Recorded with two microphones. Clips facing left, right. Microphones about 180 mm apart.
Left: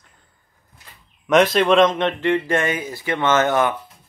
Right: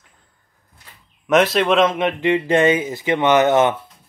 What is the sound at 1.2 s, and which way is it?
Speech, centre (ahead or behind).